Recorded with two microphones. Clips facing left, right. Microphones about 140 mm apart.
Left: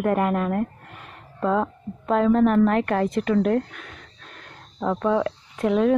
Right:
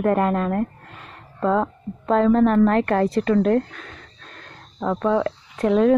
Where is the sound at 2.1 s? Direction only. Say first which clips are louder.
Right 2 dB; 10° left (ahead or behind).